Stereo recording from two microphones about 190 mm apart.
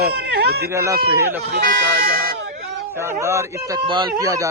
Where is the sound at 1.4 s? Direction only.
55° right (ahead or behind).